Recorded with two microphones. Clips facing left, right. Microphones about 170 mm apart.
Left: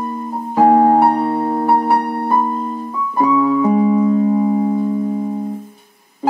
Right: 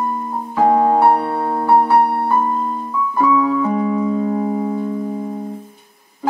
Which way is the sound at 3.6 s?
20° left (ahead or behind).